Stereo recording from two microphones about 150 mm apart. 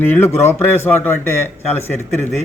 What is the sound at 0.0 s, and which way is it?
Speech, 15° left (ahead or behind).